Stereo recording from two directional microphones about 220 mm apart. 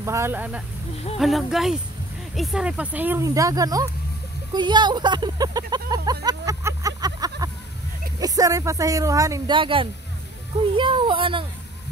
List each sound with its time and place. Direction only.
0.0 s speech: 10° right (ahead or behind)